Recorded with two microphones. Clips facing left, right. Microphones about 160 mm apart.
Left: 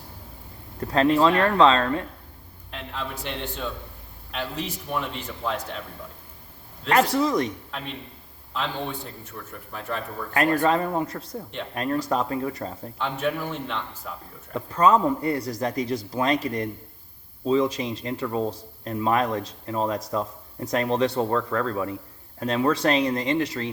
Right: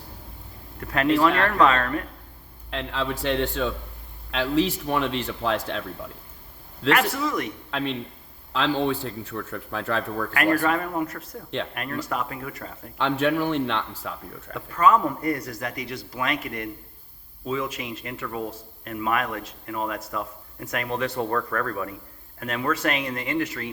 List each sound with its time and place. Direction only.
0.8 s a man's voice: 25° left (ahead or behind)
2.6 s a man's voice: 90° right
6.9 s speech: 30° left (ahead or behind)
7.7 s a man's voice: 90° right
10.3 s a man's voice: 25° left (ahead or behind)
13.0 s a man's voice: 90° right
14.5 s a man's voice: 30° left (ahead or behind)